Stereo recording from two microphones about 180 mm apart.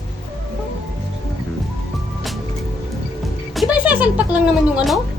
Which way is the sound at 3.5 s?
10° right (ahead or behind).